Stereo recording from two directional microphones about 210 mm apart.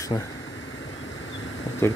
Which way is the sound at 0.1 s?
15° left (ahead or behind).